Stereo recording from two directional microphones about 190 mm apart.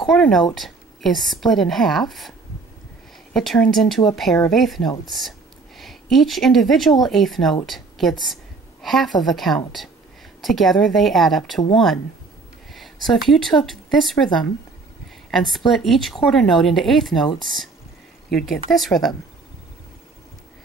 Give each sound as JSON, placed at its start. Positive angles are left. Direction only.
{"t": 0.1, "sound": "speech", "side_deg": 0}
{"t": 3.3, "sound": "a woman's voice", "side_deg": 5}
{"t": 18.3, "sound": "speech", "side_deg": 0}